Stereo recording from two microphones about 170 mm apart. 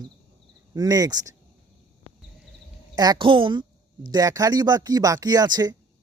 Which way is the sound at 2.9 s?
25° right (ahead or behind).